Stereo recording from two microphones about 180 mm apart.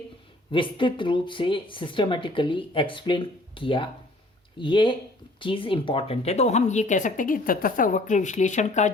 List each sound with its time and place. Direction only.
0.5 s speech: 30° left (ahead or behind)